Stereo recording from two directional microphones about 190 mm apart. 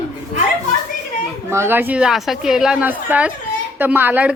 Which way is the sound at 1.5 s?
10° right (ahead or behind).